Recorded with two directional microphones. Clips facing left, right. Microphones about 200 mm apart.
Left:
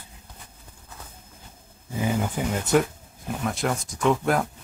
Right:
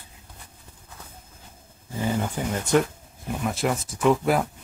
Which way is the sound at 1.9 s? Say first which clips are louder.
Left 1 dB; 10° left (ahead or behind).